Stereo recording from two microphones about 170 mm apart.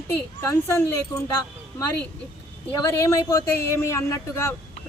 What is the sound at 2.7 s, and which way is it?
A man's voice, 20° left (ahead or behind).